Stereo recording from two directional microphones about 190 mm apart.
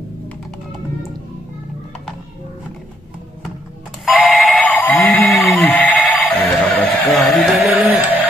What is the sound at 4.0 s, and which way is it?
Alarm clock, centre (ahead or behind).